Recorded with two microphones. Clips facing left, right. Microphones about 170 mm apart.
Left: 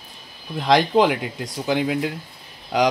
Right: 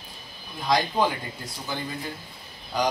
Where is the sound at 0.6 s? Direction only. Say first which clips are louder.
Left 7 dB; 80° left.